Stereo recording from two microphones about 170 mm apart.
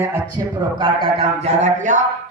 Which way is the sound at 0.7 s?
30° right (ahead or behind).